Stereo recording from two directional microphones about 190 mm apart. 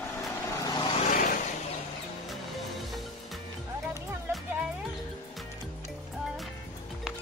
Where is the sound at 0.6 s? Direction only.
20° left (ahead or behind).